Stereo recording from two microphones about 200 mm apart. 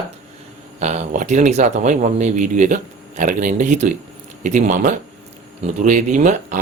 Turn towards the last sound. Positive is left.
turn(degrees=-40)  # may be behind; listen again after turning